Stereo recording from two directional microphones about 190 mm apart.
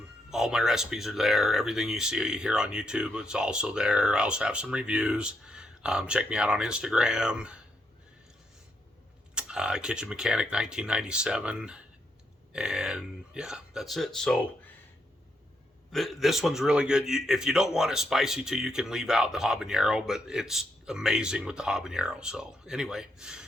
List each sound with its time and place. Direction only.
0.3 s a man's voice: centre (ahead or behind)
9.3 s a man's voice: 5° right (ahead or behind)
15.9 s a man's voice: centre (ahead or behind)